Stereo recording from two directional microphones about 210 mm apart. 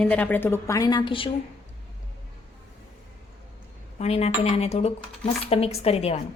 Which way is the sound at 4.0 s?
30° left (ahead or behind).